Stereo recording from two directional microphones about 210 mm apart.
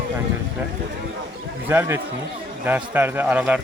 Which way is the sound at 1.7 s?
10° right (ahead or behind).